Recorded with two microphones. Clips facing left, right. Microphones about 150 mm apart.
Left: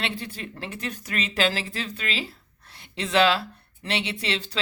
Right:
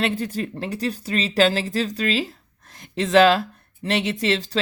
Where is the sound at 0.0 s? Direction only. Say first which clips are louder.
Right 8 dB; 40° right (ahead or behind).